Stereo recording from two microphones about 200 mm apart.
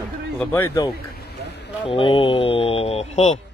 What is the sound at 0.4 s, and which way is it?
Speech, 10° left (ahead or behind).